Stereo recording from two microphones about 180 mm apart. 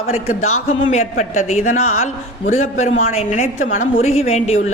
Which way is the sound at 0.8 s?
40° left (ahead or behind).